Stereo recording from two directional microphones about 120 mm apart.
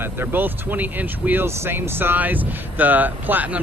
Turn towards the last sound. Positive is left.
turn(degrees=-15)  # may be behind; listen again after turning